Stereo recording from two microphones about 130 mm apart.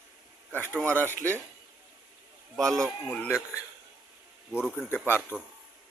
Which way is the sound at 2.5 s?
Centre (ahead or behind).